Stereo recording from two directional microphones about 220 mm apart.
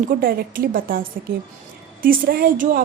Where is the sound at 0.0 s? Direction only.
40° right (ahead or behind).